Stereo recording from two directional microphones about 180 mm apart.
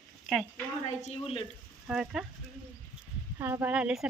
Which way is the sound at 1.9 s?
5° right (ahead or behind).